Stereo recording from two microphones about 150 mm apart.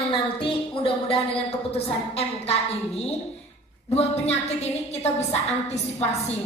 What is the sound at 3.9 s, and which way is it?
A woman's voice, 45° left (ahead or behind).